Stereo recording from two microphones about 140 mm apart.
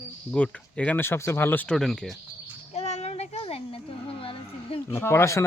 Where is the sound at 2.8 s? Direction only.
50° left (ahead or behind).